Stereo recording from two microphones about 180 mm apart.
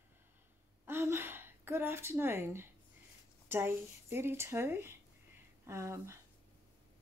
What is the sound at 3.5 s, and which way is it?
Speech, 15° right (ahead or behind).